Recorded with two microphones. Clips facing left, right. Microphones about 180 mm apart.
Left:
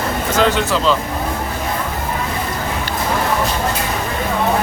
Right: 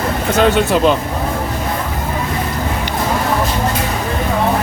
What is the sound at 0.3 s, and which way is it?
Speech, 60° right (ahead or behind).